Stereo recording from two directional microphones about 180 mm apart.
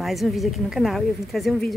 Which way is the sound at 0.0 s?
Centre (ahead or behind).